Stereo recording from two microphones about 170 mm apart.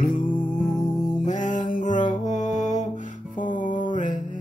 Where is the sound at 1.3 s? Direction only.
50° left (ahead or behind).